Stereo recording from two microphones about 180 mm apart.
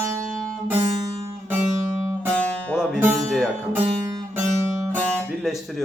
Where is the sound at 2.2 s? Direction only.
5° left (ahead or behind).